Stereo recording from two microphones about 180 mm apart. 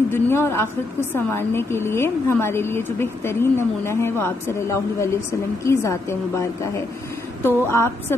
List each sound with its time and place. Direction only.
0.1 s a woman's voice: 15° left (ahead or behind)